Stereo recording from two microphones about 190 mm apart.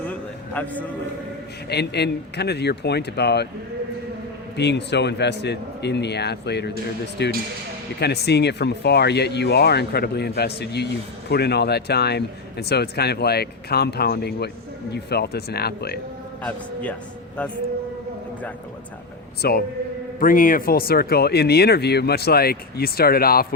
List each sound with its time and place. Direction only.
0.1 s a sound: 10° left (ahead or behind)
1.7 s speech: 60° left (ahead or behind)
4.5 s speech: 65° left (ahead or behind)
16.4 s a man's voice: 5° left (ahead or behind)
19.4 s speech: 55° left (ahead or behind)